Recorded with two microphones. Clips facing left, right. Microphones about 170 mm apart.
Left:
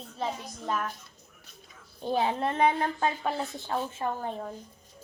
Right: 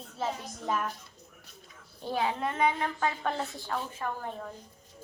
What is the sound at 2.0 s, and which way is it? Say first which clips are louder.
A woman's voice: left 3 dB; 25° left (ahead or behind).